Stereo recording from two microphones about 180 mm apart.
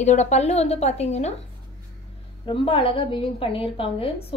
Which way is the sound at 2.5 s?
30° left (ahead or behind).